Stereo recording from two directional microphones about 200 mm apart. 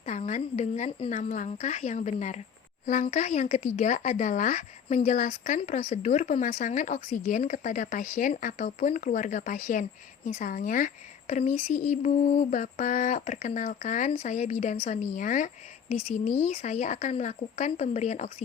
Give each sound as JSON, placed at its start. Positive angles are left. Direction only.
{"t": 0.0, "sound": "speech", "side_deg": 35}
{"t": 16.6, "sound": "speech", "side_deg": 35}